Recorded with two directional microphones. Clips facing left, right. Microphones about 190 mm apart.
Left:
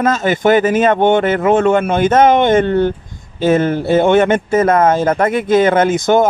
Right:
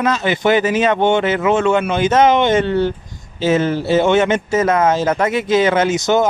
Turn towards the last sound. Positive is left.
turn(degrees=55)  # may be behind; listen again after turning